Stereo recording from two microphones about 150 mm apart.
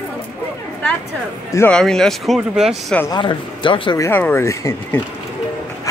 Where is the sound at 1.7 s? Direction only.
5° left (ahead or behind).